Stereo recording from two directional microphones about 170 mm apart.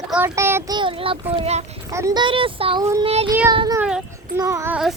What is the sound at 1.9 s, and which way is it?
Speech, 20° right (ahead or behind).